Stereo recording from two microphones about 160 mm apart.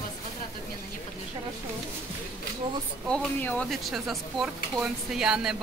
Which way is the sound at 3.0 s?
5° left (ahead or behind).